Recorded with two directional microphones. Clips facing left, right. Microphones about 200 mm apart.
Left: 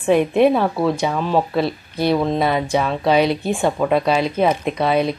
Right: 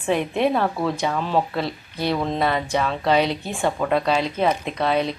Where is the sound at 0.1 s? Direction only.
10° left (ahead or behind).